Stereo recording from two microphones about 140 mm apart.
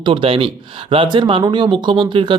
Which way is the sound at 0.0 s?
35° right (ahead or behind).